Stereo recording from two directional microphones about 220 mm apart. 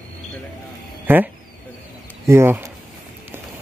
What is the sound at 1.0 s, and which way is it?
Speech, 10° right (ahead or behind).